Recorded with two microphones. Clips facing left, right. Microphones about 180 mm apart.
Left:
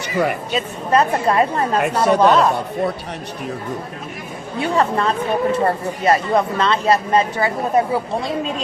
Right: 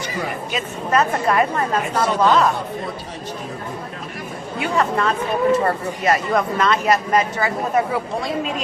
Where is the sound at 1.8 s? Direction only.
65° left (ahead or behind).